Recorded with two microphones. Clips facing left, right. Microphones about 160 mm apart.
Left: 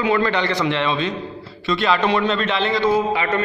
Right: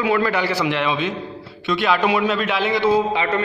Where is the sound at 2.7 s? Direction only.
15° right (ahead or behind).